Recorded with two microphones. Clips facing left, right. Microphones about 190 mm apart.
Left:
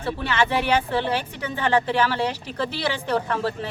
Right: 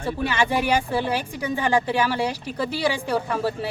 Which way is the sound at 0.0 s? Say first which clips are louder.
Even; 10° right (ahead or behind).